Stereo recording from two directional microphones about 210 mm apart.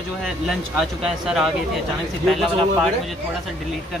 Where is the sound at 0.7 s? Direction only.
Centre (ahead or behind).